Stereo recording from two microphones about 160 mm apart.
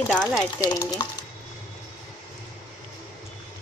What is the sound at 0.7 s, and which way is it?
Speech, 25° left (ahead or behind).